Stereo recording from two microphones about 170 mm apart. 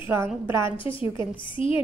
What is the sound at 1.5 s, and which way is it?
Speech, 30° left (ahead or behind).